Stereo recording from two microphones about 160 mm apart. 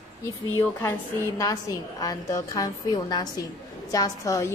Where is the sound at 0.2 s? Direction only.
15° left (ahead or behind).